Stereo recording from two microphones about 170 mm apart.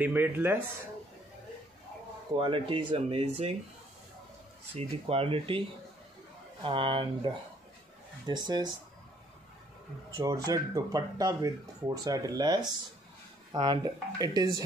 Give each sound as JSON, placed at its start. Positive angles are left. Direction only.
{"t": 0.0, "sound": "speech", "side_deg": -10}
{"t": 2.3, "sound": "speech", "side_deg": -30}
{"t": 4.7, "sound": "speech", "side_deg": -35}
{"t": 6.6, "sound": "speech", "side_deg": -30}
{"t": 8.3, "sound": "speech", "side_deg": -25}
{"t": 10.1, "sound": "speech", "side_deg": -20}